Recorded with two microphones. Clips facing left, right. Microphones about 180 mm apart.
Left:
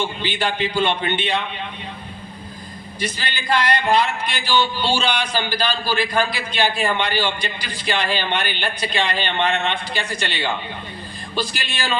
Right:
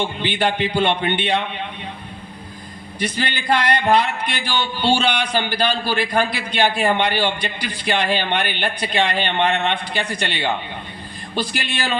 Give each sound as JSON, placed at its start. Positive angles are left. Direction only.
{"t": 0.0, "sound": "a man's voice", "side_deg": -60}
{"t": 3.0, "sound": "a man's voice", "side_deg": -55}